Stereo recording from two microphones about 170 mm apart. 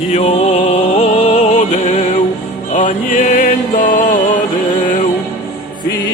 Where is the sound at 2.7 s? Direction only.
45° left (ahead or behind).